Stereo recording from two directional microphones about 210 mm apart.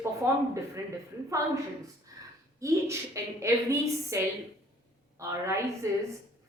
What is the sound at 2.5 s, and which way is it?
A woman's voice, 15° right (ahead or behind).